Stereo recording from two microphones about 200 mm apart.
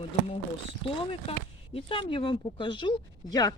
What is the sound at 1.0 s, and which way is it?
Speech, 25° left (ahead or behind).